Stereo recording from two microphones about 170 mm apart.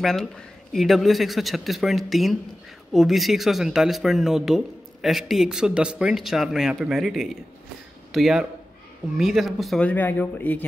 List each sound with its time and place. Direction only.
0.0 s speech: centre (ahead or behind)